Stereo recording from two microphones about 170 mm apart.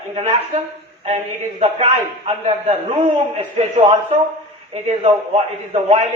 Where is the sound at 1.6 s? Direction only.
40° right (ahead or behind).